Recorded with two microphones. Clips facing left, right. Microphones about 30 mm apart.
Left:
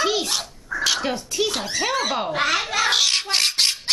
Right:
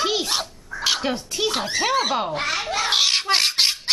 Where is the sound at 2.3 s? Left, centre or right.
Left.